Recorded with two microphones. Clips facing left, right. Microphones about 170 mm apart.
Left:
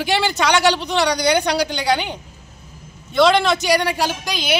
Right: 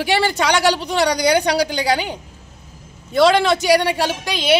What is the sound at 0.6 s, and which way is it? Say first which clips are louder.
Speech: even; 35° right (ahead or behind).